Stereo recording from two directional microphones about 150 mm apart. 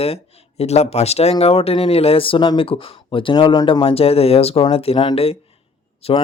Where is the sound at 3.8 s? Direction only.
40° left (ahead or behind).